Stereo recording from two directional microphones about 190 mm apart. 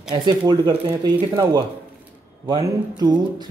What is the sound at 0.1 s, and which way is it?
Speech, 20° right (ahead or behind).